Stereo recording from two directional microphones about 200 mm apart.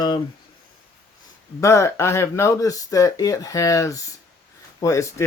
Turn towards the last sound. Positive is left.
turn(degrees=15)  # may be behind; listen again after turning